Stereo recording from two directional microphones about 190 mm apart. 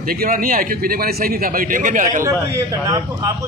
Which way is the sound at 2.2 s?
15° right (ahead or behind).